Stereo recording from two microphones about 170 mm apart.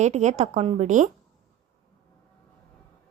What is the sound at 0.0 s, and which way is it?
A woman's voice, 45° right (ahead or behind).